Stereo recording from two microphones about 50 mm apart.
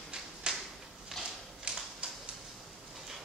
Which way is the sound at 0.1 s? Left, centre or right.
Centre.